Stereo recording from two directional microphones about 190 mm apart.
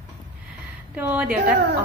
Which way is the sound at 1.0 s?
5° right (ahead or behind).